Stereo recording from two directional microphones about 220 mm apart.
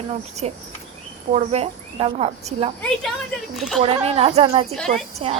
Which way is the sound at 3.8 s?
25° right (ahead or behind).